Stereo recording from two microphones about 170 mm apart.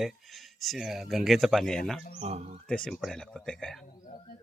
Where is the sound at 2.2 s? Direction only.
40° right (ahead or behind).